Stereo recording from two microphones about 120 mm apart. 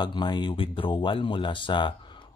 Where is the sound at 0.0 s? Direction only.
35° left (ahead or behind).